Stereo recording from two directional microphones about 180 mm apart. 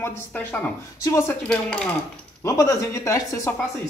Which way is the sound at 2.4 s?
15° left (ahead or behind).